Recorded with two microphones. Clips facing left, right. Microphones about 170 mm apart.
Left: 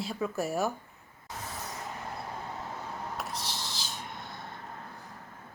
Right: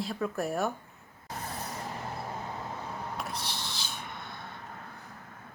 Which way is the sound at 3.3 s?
60° right (ahead or behind).